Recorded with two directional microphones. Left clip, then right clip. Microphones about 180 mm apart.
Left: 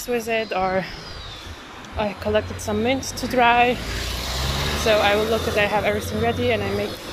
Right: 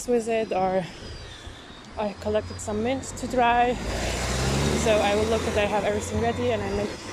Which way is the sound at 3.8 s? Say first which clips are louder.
Even; 55° right (ahead or behind).